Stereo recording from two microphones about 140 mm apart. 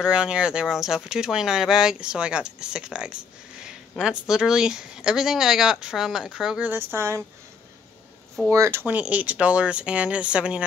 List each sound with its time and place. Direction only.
0.0 s speech: 5° right (ahead or behind)
8.5 s speech: 20° right (ahead or behind)